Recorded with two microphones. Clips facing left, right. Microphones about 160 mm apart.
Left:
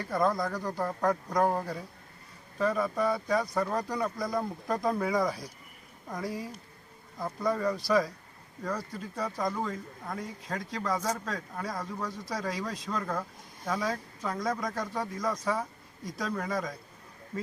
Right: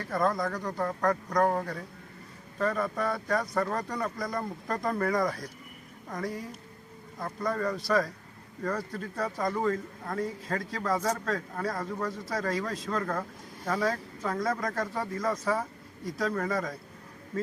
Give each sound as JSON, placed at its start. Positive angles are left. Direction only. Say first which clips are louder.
{"t": 0.0, "sound": "speech", "louder": "even", "side_deg": 0}